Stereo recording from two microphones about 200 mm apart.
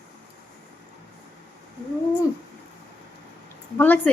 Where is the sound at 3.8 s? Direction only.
10° left (ahead or behind).